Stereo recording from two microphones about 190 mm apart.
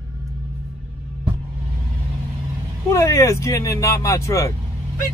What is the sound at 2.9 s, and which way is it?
Speech, 15° left (ahead or behind).